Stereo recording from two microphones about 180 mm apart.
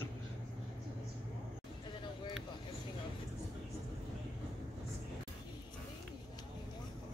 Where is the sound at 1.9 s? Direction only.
25° left (ahead or behind).